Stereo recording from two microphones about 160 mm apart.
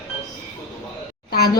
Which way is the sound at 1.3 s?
75° left (ahead or behind).